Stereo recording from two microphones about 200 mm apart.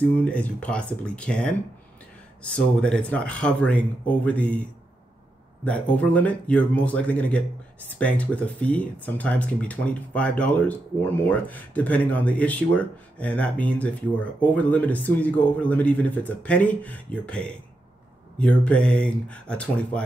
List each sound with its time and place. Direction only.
0.1 s speech: 5° left (ahead or behind)
5.6 s speech: 5° left (ahead or behind)